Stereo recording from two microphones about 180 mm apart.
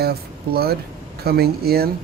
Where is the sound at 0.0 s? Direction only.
60° right (ahead or behind).